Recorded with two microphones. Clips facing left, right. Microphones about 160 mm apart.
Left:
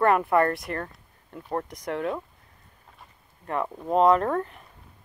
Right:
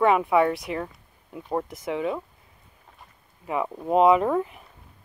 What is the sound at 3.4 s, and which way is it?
Speech, 5° right (ahead or behind).